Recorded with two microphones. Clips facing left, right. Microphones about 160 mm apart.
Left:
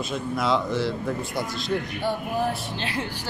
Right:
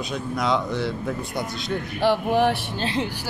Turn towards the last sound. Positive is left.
turn(degrees=-20)  # may be behind; listen again after turning